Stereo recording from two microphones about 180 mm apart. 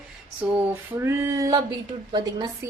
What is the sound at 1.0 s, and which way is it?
Speech, 15° right (ahead or behind).